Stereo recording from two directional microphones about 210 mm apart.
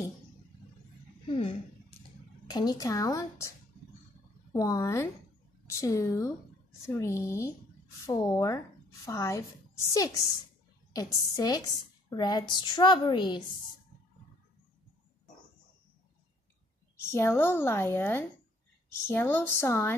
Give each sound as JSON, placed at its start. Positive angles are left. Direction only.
{"t": 2.0, "sound": "a woman's voice", "side_deg": 20}
{"t": 17.1, "sound": "a woman's voice", "side_deg": 10}